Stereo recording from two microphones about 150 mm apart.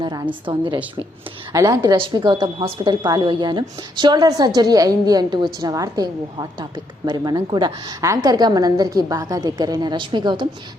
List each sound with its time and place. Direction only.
0.0 s a woman's voice: 25° right (ahead or behind)
1.5 s a woman's voice: 25° right (ahead or behind)